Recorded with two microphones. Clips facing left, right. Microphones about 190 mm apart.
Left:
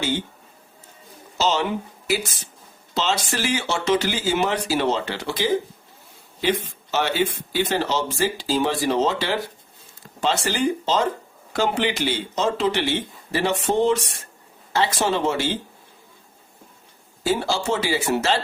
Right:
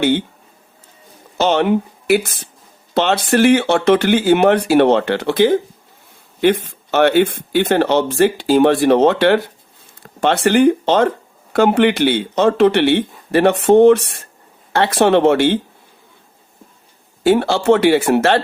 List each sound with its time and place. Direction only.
0.0 s speech: 60° right (ahead or behind)
1.4 s speech: 60° right (ahead or behind)
17.2 s speech: 60° right (ahead or behind)